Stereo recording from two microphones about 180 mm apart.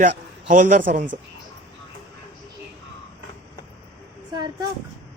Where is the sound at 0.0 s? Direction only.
45° right (ahead or behind).